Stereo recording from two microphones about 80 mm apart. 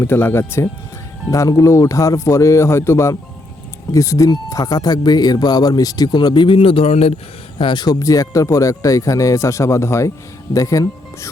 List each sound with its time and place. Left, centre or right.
0.0 s speech: left
1.3 s speech: left
7.6 s speech: left
7.9 s speech: left